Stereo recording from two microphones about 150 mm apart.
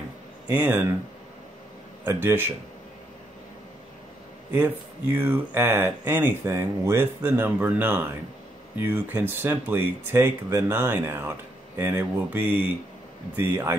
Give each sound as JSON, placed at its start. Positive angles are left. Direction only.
{"t": 0.5, "sound": "speech", "side_deg": -15}
{"t": 2.0, "sound": "speech", "side_deg": -15}
{"t": 5.1, "sound": "speech", "side_deg": -15}